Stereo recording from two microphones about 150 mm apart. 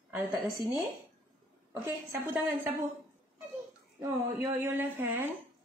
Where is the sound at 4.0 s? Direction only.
15° right (ahead or behind).